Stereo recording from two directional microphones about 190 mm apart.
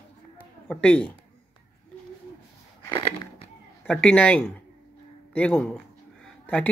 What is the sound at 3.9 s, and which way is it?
Speech, 5° left (ahead or behind).